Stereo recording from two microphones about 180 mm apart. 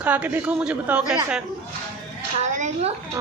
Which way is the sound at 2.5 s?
40° right (ahead or behind).